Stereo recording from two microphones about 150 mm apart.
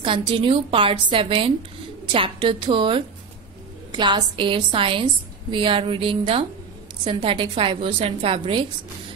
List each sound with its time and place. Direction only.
0.0 s a woman's voice: 35° right (ahead or behind)